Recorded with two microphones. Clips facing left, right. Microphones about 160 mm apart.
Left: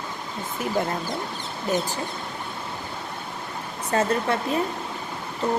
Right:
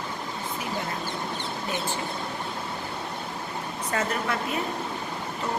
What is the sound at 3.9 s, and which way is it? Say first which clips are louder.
Speech: left 6 dB; 30° left (ahead or behind).